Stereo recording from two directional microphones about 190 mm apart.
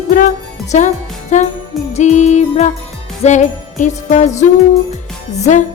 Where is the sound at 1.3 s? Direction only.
40° left (ahead or behind).